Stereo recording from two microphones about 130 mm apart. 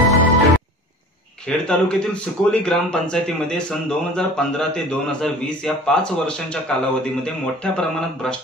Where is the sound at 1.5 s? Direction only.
5° left (ahead or behind).